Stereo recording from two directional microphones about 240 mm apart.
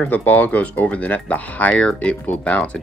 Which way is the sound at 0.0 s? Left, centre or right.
Centre.